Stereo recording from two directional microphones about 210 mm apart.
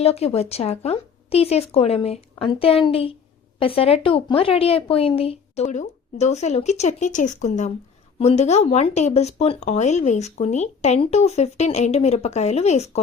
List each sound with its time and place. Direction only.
0.0 s speech: 30° left (ahead or behind)